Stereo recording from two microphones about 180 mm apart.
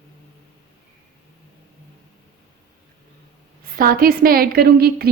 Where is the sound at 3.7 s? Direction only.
55° right (ahead or behind).